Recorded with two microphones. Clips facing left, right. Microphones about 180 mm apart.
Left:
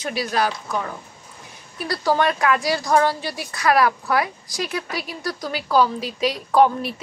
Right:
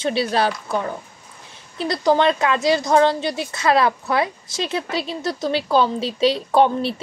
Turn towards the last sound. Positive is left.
turn(degrees=-30)  # may be behind; listen again after turning